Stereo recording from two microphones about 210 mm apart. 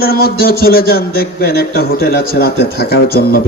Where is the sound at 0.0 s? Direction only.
45° left (ahead or behind).